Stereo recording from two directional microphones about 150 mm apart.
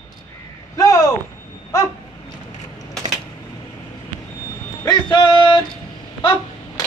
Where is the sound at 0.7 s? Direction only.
20° left (ahead or behind).